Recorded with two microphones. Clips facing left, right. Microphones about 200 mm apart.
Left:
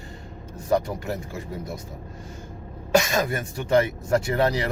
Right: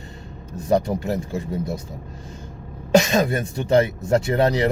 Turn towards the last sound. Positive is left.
turn(degrees=-25)  # may be behind; listen again after turning